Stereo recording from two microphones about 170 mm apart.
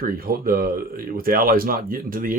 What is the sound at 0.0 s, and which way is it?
Speech, 60° right (ahead or behind).